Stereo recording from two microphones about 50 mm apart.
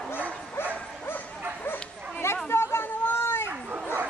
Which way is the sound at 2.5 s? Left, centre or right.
Left.